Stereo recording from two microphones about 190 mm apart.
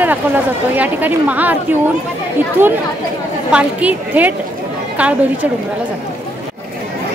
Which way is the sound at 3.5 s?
5° right (ahead or behind).